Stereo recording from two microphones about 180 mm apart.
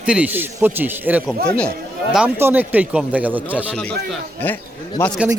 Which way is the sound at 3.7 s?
5° left (ahead or behind).